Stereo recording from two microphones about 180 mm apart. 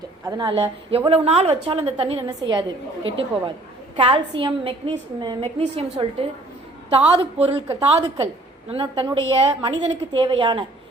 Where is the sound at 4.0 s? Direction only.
30° right (ahead or behind).